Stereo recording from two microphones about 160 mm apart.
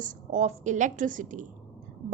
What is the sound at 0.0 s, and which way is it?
A woman's voice, 55° right (ahead or behind).